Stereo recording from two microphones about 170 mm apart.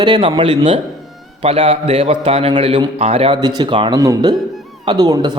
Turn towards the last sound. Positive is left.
turn(degrees=-25)  # may be behind; listen again after turning